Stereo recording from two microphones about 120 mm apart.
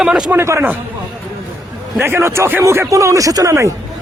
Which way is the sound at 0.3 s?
20° right (ahead or behind).